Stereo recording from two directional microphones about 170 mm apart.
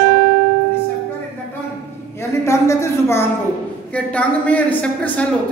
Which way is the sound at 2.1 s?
15° left (ahead or behind).